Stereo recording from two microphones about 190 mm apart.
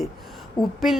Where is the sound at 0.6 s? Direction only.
20° left (ahead or behind).